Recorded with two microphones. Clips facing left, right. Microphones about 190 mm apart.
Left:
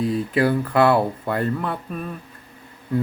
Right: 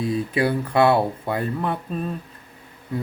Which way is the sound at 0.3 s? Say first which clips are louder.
Left 2 dB; 20° right (ahead or behind).